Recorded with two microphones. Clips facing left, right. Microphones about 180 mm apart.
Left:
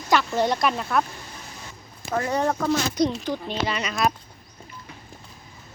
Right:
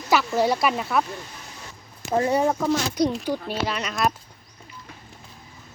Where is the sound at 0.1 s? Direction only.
5° right (ahead or behind).